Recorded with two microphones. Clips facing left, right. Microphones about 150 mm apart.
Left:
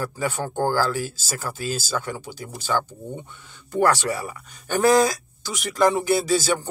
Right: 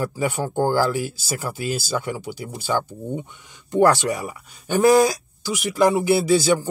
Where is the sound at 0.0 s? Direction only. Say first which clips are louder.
Right 3 dB; 15° right (ahead or behind).